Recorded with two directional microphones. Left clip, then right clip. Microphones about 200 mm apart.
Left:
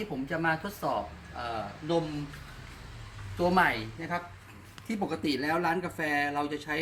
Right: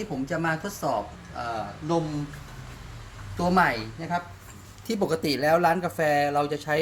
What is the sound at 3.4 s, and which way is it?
Speech, 20° right (ahead or behind).